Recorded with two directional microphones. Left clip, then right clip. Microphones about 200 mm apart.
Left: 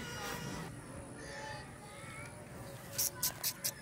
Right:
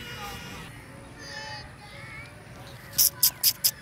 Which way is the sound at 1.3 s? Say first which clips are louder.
Right 8 dB; 45° left (ahead or behind).